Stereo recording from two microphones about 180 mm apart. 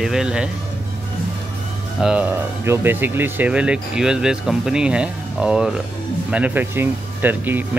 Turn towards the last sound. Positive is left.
turn(degrees=-10)  # may be behind; listen again after turning